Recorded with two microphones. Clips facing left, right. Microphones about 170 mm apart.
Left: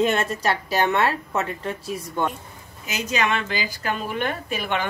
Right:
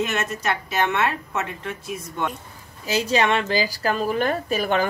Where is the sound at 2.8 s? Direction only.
30° right (ahead or behind).